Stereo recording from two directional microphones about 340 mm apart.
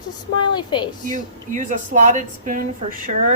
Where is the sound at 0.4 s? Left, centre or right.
Centre.